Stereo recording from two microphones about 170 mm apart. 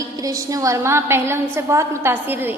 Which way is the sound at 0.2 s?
20° right (ahead or behind).